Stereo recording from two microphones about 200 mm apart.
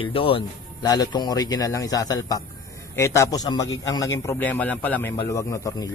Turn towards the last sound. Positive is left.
turn(degrees=15)  # may be behind; listen again after turning